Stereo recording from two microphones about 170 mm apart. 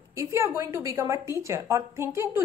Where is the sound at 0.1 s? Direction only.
15° right (ahead or behind).